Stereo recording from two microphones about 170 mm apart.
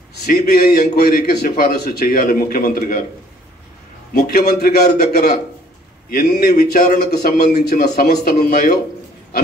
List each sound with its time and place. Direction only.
0.3 s a man's voice: 65° left (ahead or behind)
4.1 s a man's voice: 65° left (ahead or behind)